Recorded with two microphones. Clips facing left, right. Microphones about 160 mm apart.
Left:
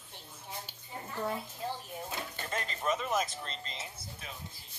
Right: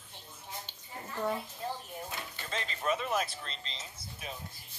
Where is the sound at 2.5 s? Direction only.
45° left (ahead or behind).